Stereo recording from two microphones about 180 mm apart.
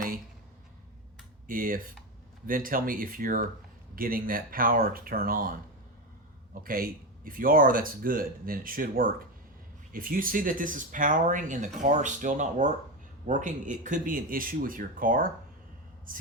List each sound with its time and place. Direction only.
1.5 s speech: 50° right (ahead or behind)